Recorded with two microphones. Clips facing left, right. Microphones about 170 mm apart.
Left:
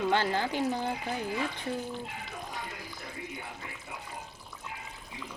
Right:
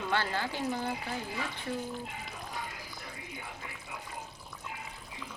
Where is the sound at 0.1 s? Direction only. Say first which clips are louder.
Left 4 dB; 15° left (ahead or behind).